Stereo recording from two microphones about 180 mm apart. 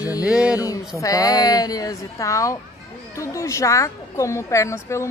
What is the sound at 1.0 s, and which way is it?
A woman's voice, 20° left (ahead or behind).